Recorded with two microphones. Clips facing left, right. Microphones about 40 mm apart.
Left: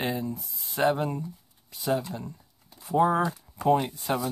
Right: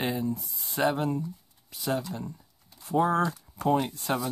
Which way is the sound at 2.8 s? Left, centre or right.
Centre.